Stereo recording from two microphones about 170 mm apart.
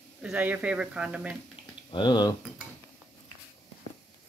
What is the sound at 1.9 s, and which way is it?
Speech, 25° left (ahead or behind).